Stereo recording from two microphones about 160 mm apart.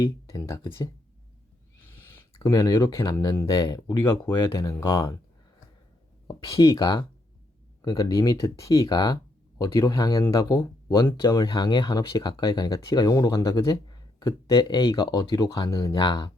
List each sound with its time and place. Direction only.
0.0 s speech: 20° left (ahead or behind)
1.8 s owl: 15° left (ahead or behind)
2.4 s speech: 25° left (ahead or behind)
6.2 s speech: 25° left (ahead or behind)